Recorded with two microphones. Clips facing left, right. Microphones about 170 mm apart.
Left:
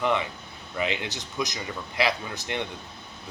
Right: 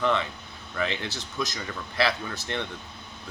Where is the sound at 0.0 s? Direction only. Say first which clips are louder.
Even; 15° left (ahead or behind).